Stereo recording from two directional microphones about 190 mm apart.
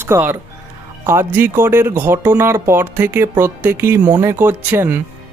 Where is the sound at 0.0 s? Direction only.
10° right (ahead or behind).